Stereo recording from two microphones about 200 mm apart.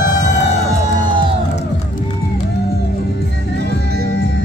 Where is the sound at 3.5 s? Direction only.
50° right (ahead or behind).